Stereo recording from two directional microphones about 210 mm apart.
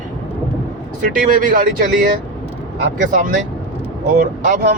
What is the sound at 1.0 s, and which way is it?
Speech, 40° right (ahead or behind).